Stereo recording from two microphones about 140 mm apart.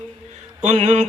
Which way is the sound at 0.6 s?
55° right (ahead or behind).